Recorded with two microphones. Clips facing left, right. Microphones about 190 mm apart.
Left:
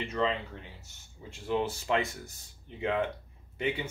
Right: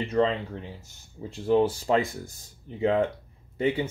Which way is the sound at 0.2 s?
40° right (ahead or behind).